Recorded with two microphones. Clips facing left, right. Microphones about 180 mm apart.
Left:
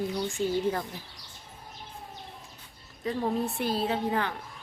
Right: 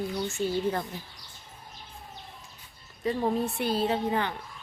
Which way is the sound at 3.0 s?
Centre (ahead or behind).